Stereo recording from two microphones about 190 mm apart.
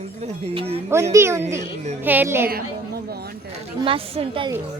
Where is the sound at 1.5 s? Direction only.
35° right (ahead or behind).